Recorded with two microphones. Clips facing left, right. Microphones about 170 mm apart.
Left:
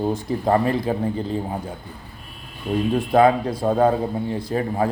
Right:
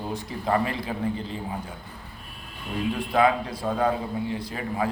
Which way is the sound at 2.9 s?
40° left (ahead or behind).